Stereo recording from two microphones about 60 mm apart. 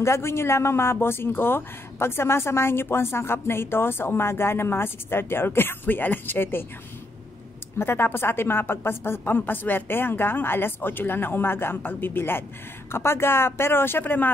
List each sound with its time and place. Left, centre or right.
0.0 s speech: left
7.8 s speech: left